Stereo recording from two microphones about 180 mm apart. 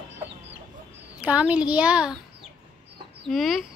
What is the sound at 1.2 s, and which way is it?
A child's voice, 5° right (ahead or behind).